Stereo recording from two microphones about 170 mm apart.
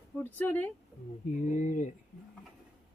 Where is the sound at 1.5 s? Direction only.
50° left (ahead or behind).